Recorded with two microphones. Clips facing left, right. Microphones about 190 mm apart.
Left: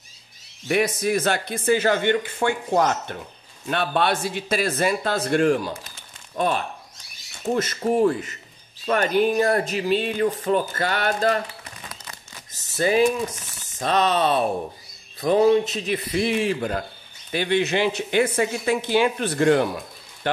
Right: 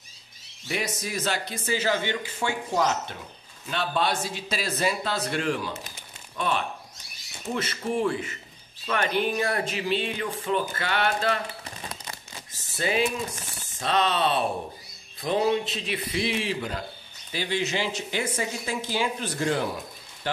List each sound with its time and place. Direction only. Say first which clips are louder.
0.7 s speech: left 10 dB; 60° left (ahead or behind); by 11.4 s 40° left (ahead or behind)
11.6 s crumpling: right 2 dB; 30° right (ahead or behind)
12.7 s a man's voice: left 7 dB; 45° left (ahead or behind)
17.3 s speech: left 6 dB; 60° left (ahead or behind)